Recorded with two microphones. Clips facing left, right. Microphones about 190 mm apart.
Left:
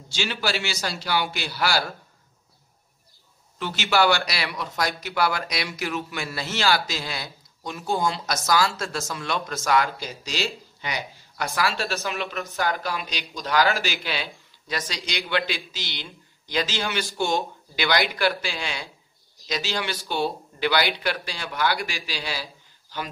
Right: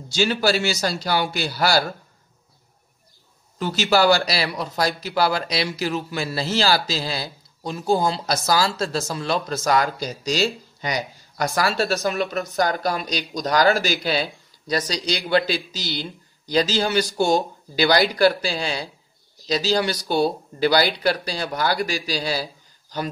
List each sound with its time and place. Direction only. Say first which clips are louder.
0.1 s speech: right 7 dB; 40° right (ahead or behind)
3.5 s speech: right 3 dB; 40° right (ahead or behind)